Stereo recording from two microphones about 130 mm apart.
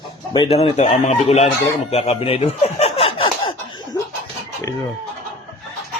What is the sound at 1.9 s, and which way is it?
Chuckle, 50° left (ahead or behind).